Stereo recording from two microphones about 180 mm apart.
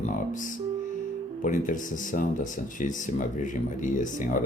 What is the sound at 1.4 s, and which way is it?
Speech, 45° left (ahead or behind).